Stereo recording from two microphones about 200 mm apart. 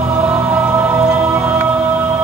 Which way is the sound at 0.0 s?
10° right (ahead or behind).